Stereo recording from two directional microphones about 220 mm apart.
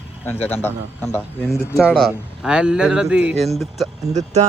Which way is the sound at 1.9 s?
5° right (ahead or behind).